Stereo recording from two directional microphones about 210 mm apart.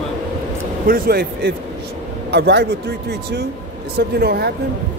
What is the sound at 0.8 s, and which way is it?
Speech, 45° right (ahead or behind).